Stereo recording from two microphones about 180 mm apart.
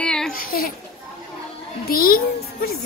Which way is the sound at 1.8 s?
55° left (ahead or behind).